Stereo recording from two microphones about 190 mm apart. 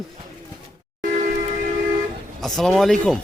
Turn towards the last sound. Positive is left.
turn(degrees=0)  # may be behind; listen again after turning